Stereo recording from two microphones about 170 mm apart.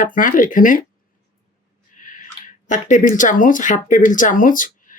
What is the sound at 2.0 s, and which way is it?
Speech, 50° left (ahead or behind).